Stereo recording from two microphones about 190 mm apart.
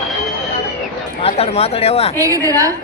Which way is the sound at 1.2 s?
30° left (ahead or behind).